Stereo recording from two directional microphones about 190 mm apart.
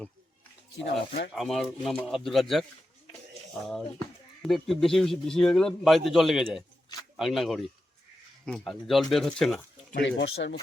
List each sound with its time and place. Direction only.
0.9 s speech: 65° left (ahead or behind)
1.3 s a man's voice: centre (ahead or behind)
3.7 s a man's voice: 5° left (ahead or behind)
9.9 s speech: 70° left (ahead or behind)